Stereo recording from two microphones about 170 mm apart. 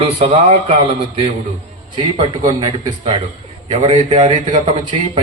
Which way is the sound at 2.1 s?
25° right (ahead or behind).